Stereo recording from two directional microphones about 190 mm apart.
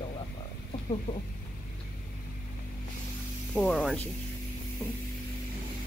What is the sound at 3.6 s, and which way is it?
Speech, centre (ahead or behind).